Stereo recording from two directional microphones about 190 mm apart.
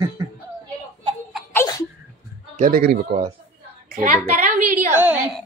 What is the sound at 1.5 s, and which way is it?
Sneeze, 20° left (ahead or behind).